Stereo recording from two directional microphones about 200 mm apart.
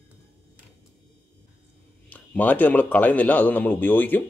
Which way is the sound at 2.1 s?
10° left (ahead or behind).